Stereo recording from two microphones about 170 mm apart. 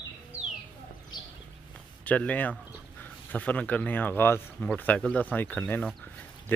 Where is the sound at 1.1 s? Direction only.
25° left (ahead or behind).